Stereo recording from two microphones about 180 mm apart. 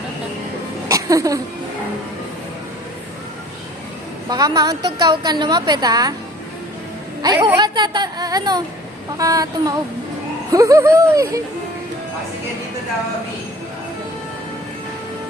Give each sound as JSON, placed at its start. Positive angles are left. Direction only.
{"t": 0.9, "sound": "a sound", "side_deg": -20}
{"t": 4.3, "sound": "a woman's voice", "side_deg": -20}
{"t": 7.2, "sound": "a woman's voice", "side_deg": -20}